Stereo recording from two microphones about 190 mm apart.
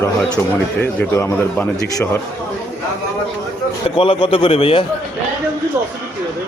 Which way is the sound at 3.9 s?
30° left (ahead or behind).